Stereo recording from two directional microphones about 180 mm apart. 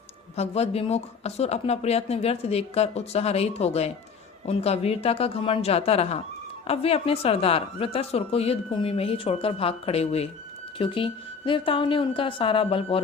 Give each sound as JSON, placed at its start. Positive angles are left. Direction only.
{"t": 0.3, "sound": "a woman's voice", "side_deg": 35}